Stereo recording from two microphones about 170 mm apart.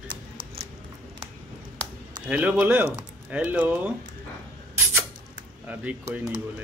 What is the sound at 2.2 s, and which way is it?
Speech, 5° right (ahead or behind).